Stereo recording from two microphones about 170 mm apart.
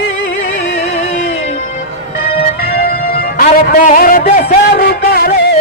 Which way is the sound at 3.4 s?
55° left (ahead or behind).